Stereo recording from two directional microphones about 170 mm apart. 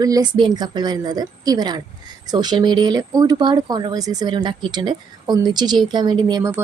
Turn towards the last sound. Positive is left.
turn(degrees=-25)  # may be behind; listen again after turning